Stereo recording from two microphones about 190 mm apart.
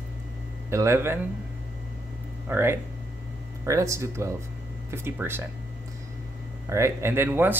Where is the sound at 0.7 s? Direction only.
15° right (ahead or behind).